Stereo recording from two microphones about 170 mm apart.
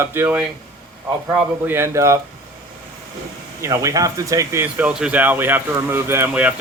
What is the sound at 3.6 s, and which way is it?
Speech, 20° right (ahead or behind).